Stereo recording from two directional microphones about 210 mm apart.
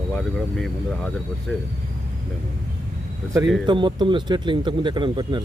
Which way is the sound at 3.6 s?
20° right (ahead or behind).